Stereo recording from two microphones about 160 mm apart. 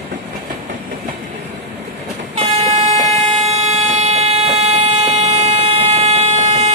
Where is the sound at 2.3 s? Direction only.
40° right (ahead or behind).